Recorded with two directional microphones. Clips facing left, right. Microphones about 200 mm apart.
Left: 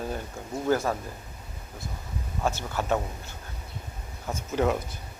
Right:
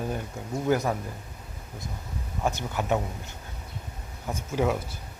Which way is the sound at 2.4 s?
15° right (ahead or behind).